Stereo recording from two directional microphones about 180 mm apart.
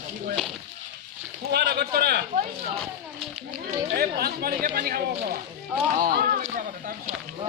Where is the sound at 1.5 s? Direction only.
65° right (ahead or behind).